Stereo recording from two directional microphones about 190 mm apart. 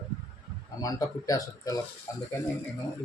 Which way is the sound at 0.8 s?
20° left (ahead or behind).